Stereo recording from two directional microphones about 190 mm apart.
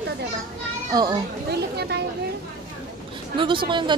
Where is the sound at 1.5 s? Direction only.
60° right (ahead or behind).